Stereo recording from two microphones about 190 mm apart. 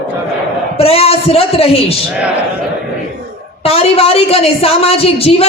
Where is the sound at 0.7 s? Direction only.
30° left (ahead or behind).